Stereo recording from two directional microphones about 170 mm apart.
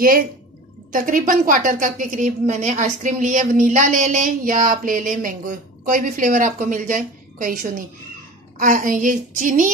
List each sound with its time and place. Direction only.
0.9 s a woman's voice: 55° right (ahead or behind)